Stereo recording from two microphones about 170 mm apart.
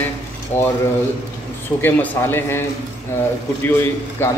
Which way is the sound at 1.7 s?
10° left (ahead or behind).